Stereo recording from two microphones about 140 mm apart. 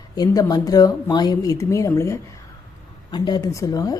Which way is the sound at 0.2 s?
30° left (ahead or behind).